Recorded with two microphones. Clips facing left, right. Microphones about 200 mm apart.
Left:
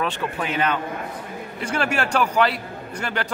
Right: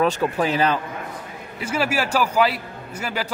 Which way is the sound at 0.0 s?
35° right (ahead or behind).